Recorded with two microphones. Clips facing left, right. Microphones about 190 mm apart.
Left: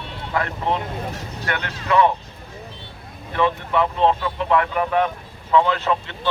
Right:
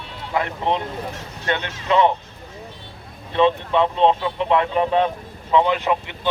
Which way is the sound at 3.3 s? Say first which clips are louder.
Right 3 dB; 20° right (ahead or behind).